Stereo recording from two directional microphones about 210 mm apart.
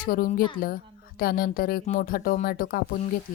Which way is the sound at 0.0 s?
40° left (ahead or behind).